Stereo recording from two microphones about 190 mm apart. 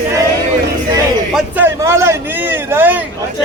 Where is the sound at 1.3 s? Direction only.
10° right (ahead or behind).